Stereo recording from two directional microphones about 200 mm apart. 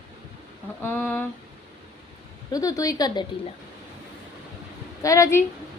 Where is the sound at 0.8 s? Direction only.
10° left (ahead or behind).